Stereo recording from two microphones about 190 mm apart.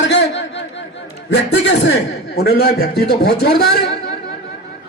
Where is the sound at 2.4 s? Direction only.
55° left (ahead or behind).